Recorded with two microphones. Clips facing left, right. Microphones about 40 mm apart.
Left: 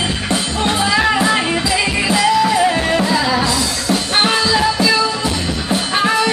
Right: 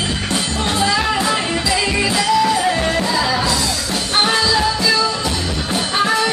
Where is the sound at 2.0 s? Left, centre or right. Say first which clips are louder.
Left 2 dB; centre.